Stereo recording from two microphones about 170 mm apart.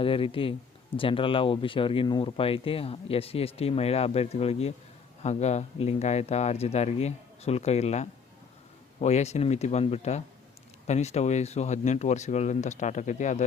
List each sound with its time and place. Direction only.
0.0 s speech: 30° left (ahead or behind)